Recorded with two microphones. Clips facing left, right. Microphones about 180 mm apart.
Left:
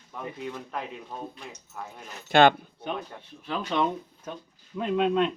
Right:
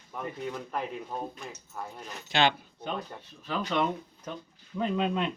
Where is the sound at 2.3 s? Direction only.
55° left (ahead or behind).